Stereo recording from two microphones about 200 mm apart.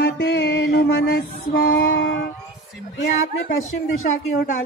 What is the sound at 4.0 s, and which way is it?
Speech, 40° left (ahead or behind).